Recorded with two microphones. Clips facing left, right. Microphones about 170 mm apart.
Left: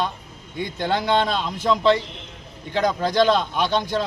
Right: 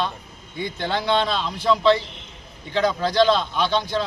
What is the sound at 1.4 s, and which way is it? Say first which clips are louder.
Speech: even; 15° left (ahead or behind).